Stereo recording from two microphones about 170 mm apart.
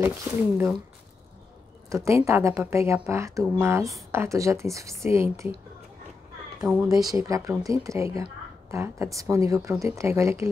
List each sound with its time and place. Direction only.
0.0 s a woman's voice: 15° right (ahead or behind)
1.9 s a woman's voice: 15° right (ahead or behind)
6.6 s speech: 5° right (ahead or behind)
7.2 s a woman's voice: 20° right (ahead or behind)